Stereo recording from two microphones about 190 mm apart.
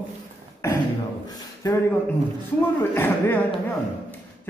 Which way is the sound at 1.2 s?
20° left (ahead or behind).